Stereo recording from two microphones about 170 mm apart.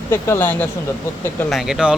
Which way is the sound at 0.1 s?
15° left (ahead or behind).